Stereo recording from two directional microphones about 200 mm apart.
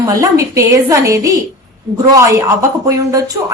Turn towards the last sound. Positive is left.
turn(degrees=-15)  # may be behind; listen again after turning